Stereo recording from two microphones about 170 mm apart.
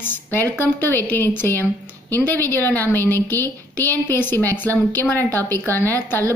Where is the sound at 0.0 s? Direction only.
10° left (ahead or behind).